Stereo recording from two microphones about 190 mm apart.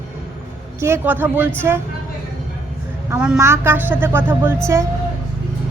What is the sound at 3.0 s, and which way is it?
A man's voice, 5° right (ahead or behind).